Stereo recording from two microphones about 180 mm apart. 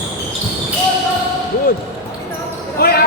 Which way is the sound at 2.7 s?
60° left (ahead or behind).